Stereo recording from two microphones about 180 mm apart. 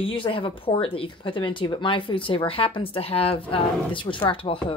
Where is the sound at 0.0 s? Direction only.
30° left (ahead or behind).